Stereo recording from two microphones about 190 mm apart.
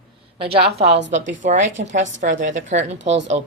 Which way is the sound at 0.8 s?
65° right (ahead or behind).